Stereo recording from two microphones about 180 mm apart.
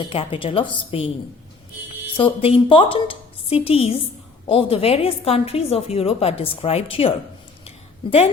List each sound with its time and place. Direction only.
0.0 s a woman's voice: 30° left (ahead or behind)
2.1 s a woman's voice: 30° left (ahead or behind)